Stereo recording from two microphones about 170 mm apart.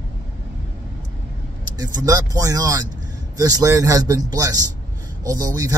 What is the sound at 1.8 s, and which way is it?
Speech, 20° right (ahead or behind).